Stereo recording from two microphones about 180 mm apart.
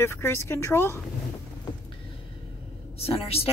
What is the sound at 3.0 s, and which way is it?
Speech, 35° left (ahead or behind).